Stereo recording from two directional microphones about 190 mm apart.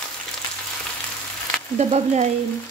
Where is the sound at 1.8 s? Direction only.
35° right (ahead or behind).